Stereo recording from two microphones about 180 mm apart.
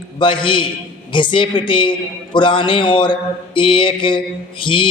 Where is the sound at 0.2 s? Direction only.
25° left (ahead or behind).